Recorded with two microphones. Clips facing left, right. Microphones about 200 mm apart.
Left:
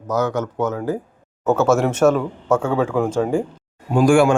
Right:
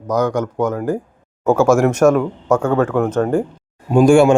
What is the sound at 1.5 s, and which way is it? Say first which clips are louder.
Speech: right 4 dB; 5° left (ahead or behind).